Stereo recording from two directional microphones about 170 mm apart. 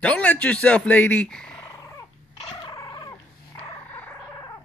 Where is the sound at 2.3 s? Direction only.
25° left (ahead or behind).